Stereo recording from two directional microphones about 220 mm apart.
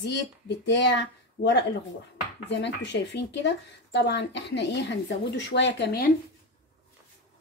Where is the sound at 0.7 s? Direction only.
55° left (ahead or behind).